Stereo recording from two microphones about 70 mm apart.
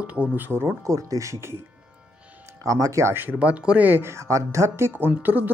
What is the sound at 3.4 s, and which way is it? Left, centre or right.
Speech, centre.